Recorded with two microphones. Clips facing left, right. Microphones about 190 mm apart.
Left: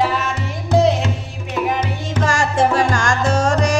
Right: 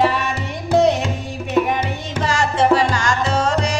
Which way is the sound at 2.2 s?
50° left (ahead or behind).